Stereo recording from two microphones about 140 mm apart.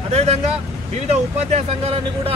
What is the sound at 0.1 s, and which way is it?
Vehicle, 50° right (ahead or behind).